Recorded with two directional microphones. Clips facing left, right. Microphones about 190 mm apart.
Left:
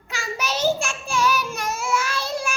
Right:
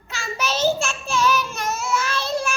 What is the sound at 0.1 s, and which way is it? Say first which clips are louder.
Child singing: right 1 dB; 10° left (ahead or behind).